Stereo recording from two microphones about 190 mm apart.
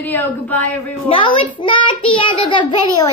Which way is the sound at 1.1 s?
25° left (ahead or behind).